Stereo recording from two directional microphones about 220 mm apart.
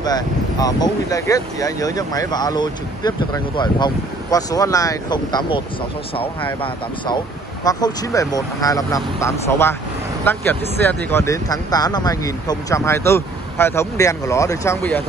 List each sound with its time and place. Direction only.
0.0 s speech: 15° left (ahead or behind)
7.6 s speech: 15° left (ahead or behind)